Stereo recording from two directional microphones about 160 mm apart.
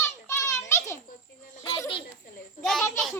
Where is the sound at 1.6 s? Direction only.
20° left (ahead or behind).